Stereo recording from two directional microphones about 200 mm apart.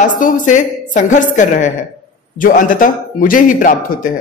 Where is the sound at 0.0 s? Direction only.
40° left (ahead or behind).